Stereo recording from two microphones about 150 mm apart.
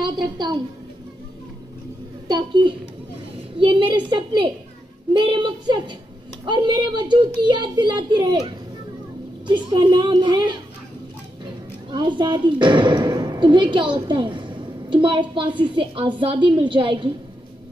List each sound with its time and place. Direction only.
0.0 s a child's voice: 30° right (ahead or behind)
2.2 s a child's voice: 30° right (ahead or behind)
9.5 s speech: 30° right (ahead or behind)
11.9 s speech: 30° right (ahead or behind)